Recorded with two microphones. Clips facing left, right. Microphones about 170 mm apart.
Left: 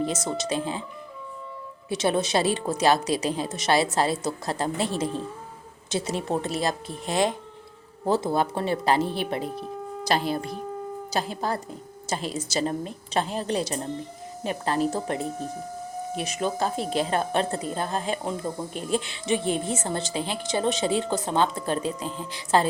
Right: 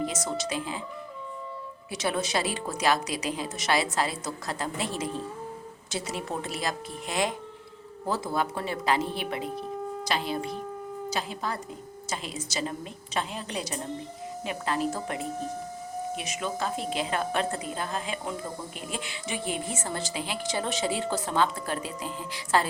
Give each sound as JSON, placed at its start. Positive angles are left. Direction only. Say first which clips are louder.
{"t": 0.3, "sound": "speech", "louder": "left 4 dB", "side_deg": 25}
{"t": 1.9, "sound": "speech", "louder": "left 5 dB", "side_deg": 25}
{"t": 9.4, "sound": "wind instrument", "louder": "left 1 dB", "side_deg": 0}
{"t": 10.1, "sound": "speech", "louder": "left 6 dB", "side_deg": 40}